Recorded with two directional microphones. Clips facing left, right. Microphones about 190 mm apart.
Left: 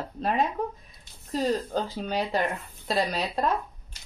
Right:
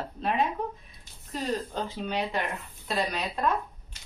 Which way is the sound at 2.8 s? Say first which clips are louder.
Left 3 dB; 35° left (ahead or behind).